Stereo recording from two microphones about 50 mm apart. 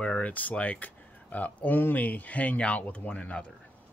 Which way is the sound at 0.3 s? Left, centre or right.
Left.